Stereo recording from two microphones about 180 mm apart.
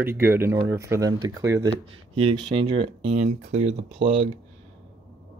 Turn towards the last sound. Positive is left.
turn(degrees=-30)  # may be behind; listen again after turning